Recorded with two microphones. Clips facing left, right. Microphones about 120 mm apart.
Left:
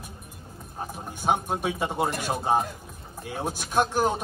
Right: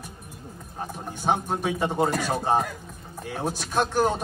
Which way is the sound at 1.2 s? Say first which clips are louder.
Right 1 dB; 10° left (ahead or behind).